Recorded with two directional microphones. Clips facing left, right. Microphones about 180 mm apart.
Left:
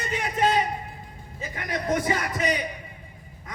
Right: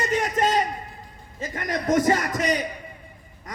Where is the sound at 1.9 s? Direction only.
45° right (ahead or behind).